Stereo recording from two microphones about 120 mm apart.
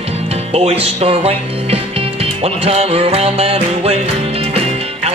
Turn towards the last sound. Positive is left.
turn(degrees=-55)  # may be behind; listen again after turning